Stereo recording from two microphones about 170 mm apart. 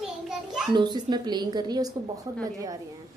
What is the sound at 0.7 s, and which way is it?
A woman's voice, 25° right (ahead or behind).